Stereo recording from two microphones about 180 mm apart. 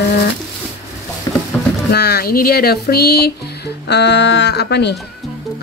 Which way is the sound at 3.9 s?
70° left (ahead or behind).